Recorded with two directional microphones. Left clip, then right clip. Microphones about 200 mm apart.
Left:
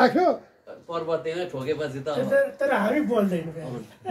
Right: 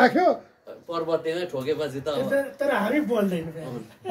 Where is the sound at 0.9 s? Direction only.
55° right (ahead or behind).